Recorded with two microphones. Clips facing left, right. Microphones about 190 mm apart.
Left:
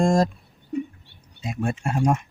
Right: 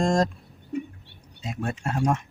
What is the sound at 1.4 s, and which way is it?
Speech, 10° left (ahead or behind).